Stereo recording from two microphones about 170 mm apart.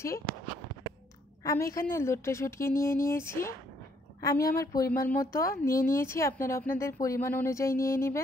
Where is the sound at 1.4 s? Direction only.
15° left (ahead or behind).